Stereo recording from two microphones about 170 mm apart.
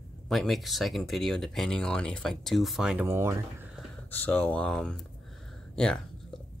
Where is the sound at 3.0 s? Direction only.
15° right (ahead or behind).